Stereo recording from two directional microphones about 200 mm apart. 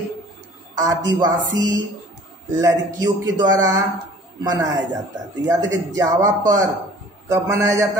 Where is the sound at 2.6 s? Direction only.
20° right (ahead or behind).